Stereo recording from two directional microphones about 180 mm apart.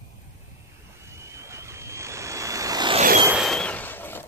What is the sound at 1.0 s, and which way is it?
Vehicle, 15° right (ahead or behind).